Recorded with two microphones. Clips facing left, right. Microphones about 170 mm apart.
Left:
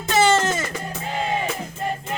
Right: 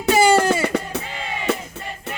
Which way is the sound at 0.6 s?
70° right (ahead or behind).